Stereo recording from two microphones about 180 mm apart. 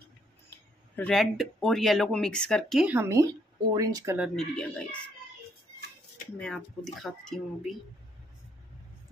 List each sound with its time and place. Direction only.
0.9 s speech: 5° left (ahead or behind)
2.9 s speech: 15° right (ahead or behind)
4.4 s speech: 5° left (ahead or behind)
6.3 s speech: 5° left (ahead or behind)